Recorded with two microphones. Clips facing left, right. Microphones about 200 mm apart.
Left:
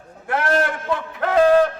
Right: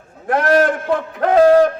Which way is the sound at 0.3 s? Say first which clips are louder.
Right 5 dB; 40° right (ahead or behind).